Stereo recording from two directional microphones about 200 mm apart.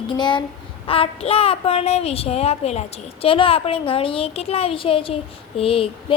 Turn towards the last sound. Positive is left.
turn(degrees=25)  # may be behind; listen again after turning